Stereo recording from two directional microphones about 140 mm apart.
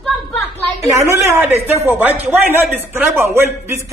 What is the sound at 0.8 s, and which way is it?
A man's voice, 20° right (ahead or behind).